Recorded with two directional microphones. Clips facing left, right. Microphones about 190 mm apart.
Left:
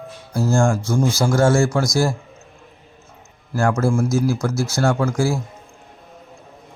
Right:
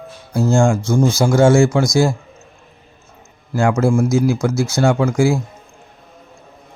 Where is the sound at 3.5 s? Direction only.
15° right (ahead or behind).